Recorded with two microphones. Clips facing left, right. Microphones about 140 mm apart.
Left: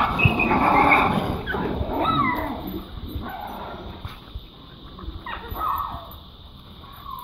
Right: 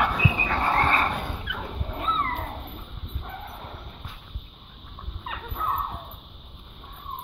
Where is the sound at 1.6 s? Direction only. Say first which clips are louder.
Left 13 dB; 80° left; by 2.5 s 65° left (ahead or behind).